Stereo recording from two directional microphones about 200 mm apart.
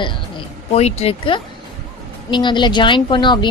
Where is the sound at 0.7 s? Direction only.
30° left (ahead or behind).